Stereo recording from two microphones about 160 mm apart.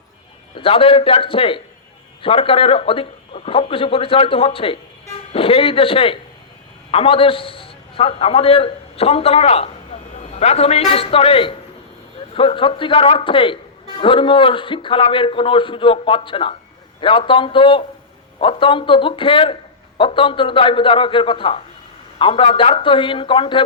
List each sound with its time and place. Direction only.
0.5 s a man's voice: 35° left (ahead or behind)